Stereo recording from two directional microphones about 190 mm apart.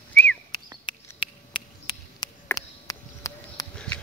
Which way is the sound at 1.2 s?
25° left (ahead or behind).